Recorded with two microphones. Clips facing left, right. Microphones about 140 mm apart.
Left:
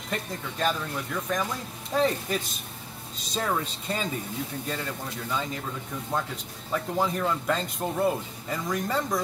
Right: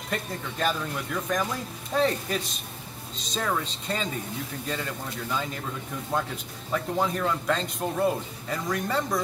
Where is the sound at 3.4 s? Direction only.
10° left (ahead or behind).